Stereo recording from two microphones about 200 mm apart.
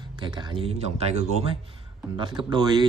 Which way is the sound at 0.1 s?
25° right (ahead or behind).